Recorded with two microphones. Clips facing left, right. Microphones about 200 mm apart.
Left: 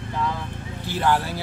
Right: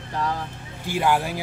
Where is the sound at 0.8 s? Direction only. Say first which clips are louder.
Right 1 dB; 10° right (ahead or behind).